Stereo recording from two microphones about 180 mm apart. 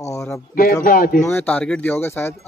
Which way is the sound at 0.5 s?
50° left (ahead or behind).